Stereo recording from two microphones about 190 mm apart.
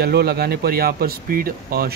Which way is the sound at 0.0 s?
55° right (ahead or behind).